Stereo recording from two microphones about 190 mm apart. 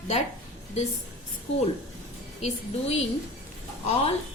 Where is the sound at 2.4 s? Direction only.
35° left (ahead or behind).